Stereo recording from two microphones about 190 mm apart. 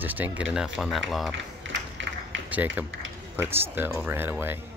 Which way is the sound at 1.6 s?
80° right.